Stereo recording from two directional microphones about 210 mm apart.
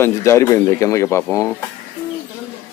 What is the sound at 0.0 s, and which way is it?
Speech, 15° left (ahead or behind).